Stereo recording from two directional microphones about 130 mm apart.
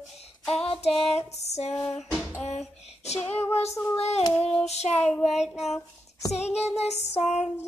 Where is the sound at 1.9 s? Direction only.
Centre (ahead or behind).